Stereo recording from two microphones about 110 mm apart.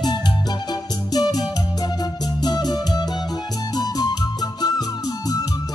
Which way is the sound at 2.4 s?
35° left (ahead or behind).